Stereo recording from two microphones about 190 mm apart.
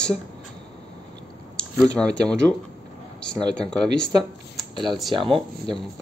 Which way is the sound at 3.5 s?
5° left (ahead or behind).